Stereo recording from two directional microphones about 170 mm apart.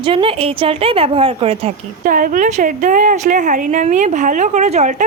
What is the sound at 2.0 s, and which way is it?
A woman's voice, 55° right (ahead or behind).